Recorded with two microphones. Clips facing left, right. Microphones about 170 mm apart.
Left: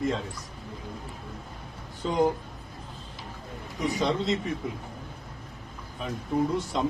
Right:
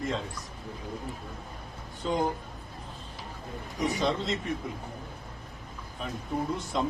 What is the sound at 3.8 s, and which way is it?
Speech, centre (ahead or behind).